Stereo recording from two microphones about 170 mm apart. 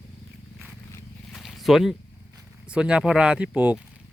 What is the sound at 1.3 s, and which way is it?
Zipper, centre (ahead or behind).